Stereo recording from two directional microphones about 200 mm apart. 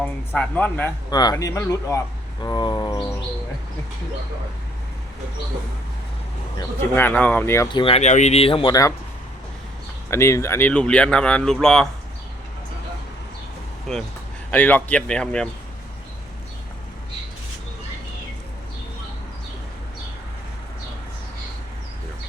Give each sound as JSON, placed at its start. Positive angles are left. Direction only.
{"t": 0.0, "sound": "speech", "side_deg": 5}
{"t": 1.1, "sound": "speech", "side_deg": 20}
{"t": 2.4, "sound": "a sound", "side_deg": 20}
{"t": 6.9, "sound": "speech", "side_deg": 10}
{"t": 10.1, "sound": "speech", "side_deg": 15}
{"t": 13.9, "sound": "speech", "side_deg": 0}